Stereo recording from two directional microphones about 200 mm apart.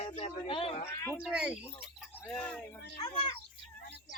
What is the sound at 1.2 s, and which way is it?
Speech, 5° right (ahead or behind).